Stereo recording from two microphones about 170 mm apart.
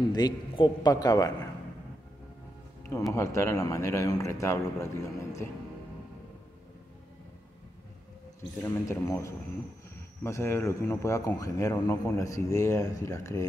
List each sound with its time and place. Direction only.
0.1 s a man's voice: 25° left (ahead or behind)
3.1 s a man's voice: 15° left (ahead or behind)
8.6 s a man's voice: 20° left (ahead or behind)